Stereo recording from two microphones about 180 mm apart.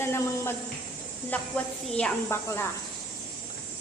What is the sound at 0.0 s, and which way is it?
A woman's voice, 15° left (ahead or behind).